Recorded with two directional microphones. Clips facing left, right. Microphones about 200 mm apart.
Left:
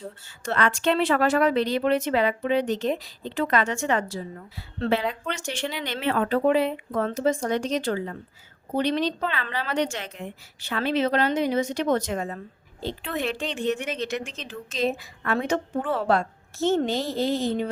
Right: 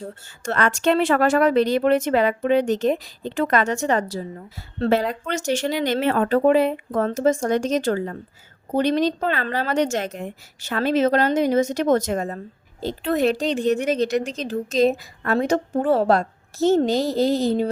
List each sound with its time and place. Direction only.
0.4 s a woman's voice: 45° right (ahead or behind)